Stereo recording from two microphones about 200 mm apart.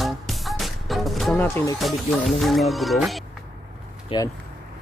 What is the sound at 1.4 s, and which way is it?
Speech, 15° left (ahead or behind).